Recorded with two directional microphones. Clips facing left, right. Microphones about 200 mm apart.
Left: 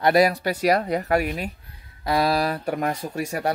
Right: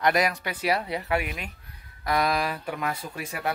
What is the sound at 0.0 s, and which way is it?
Speech, 35° left (ahead or behind).